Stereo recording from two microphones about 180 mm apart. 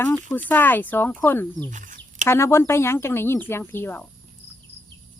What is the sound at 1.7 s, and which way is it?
Bird, 45° right (ahead or behind).